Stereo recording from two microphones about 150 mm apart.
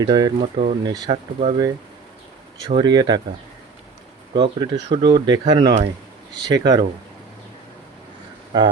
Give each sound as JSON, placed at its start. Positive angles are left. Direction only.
{"t": 0.0, "sound": "speech", "side_deg": -30}
{"t": 0.5, "sound": "speech", "side_deg": -55}
{"t": 2.6, "sound": "speech", "side_deg": -30}
{"t": 4.4, "sound": "speech", "side_deg": -30}
{"t": 8.5, "sound": "speech", "side_deg": -30}